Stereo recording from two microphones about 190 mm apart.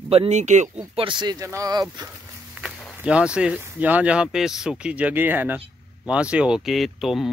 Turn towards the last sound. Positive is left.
turn(degrees=0)  # may be behind; listen again after turning